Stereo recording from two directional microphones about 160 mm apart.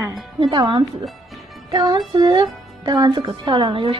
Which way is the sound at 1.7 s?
25° right (ahead or behind).